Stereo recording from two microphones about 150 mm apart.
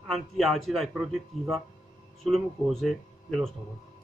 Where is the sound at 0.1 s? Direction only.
Centre (ahead or behind).